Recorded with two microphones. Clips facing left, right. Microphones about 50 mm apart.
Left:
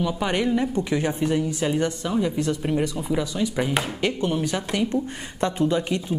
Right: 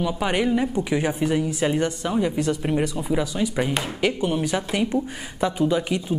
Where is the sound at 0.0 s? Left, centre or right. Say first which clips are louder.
Right 1 dB; centre.